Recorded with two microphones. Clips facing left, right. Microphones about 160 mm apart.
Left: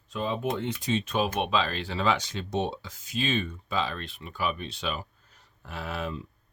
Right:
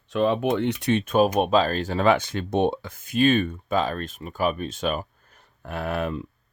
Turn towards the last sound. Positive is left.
turn(degrees=-55)  # may be behind; listen again after turning